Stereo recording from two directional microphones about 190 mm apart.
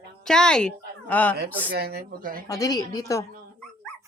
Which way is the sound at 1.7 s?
55° right (ahead or behind).